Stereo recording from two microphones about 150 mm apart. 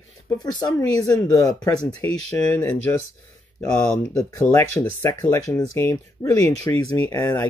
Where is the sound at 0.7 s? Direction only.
25° left (ahead or behind).